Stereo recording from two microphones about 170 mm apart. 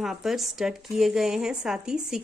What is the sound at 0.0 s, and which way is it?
A woman's voice, centre (ahead or behind).